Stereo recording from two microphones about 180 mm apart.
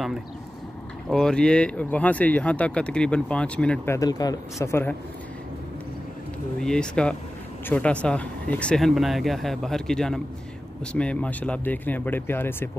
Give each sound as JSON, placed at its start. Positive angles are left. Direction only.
{"t": 1.0, "sound": "speech", "side_deg": 5}
{"t": 6.6, "sound": "speech", "side_deg": 5}